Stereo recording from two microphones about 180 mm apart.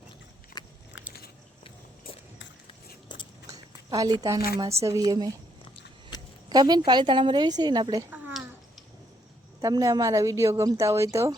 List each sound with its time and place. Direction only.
0.6 s biting: 20° left (ahead or behind)
3.8 s a woman's voice: 20° right (ahead or behind)
6.1 s a sound: 25° left (ahead or behind)
6.5 s a woman's voice: 25° right (ahead or behind)
8.1 s a sound: 5° right (ahead or behind)
9.6 s a woman's voice: 20° right (ahead or behind)